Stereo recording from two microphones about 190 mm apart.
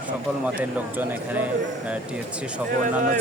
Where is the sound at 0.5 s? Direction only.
10° right (ahead or behind).